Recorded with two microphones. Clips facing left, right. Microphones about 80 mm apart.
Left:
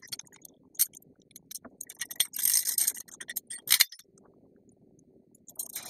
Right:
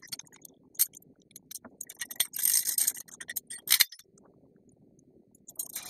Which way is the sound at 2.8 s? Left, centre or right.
Right.